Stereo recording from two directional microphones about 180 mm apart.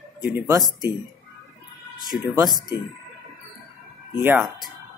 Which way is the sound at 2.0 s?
20° right (ahead or behind).